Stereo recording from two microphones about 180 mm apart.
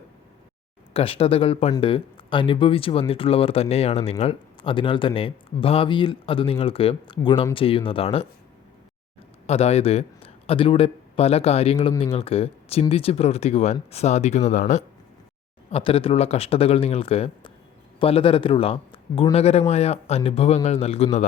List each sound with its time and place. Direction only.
0.9 s speech: 30° left (ahead or behind)
9.5 s a man's voice: 35° left (ahead or behind)
15.7 s speech: 30° left (ahead or behind)